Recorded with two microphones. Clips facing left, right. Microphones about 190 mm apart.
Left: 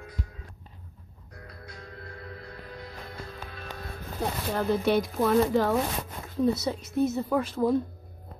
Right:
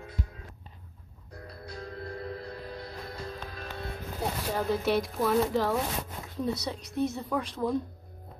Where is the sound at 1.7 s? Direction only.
35° right (ahead or behind).